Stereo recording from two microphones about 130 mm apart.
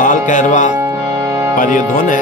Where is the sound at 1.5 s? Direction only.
90° left.